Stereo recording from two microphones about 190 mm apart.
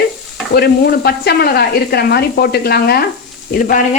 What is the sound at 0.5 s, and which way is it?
Speech, 55° left (ahead or behind).